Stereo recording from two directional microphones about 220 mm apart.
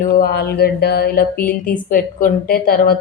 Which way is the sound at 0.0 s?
45° left (ahead or behind).